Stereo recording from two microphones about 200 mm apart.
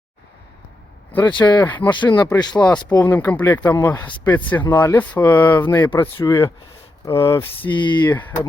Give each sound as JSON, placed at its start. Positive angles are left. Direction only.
{"t": 1.3, "sound": "speech", "side_deg": 20}
{"t": 1.8, "sound": "speech", "side_deg": 10}
{"t": 2.2, "sound": "speech", "side_deg": 20}
{"t": 2.6, "sound": "speech", "side_deg": 5}